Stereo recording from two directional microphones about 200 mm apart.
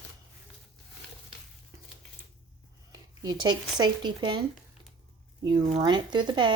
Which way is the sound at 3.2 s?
20° right (ahead or behind).